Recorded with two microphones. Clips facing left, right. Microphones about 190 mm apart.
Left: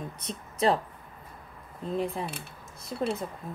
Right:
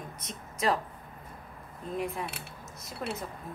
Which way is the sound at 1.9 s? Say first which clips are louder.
Left 3 dB; 30° left (ahead or behind).